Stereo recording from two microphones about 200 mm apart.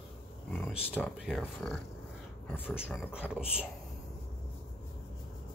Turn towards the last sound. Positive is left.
turn(degrees=-5)  # may be behind; listen again after turning